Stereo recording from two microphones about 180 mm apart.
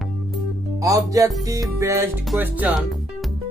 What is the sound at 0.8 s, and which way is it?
Music, 20° right (ahead or behind).